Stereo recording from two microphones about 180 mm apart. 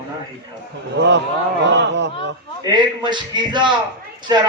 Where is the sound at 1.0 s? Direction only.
75° right (ahead or behind).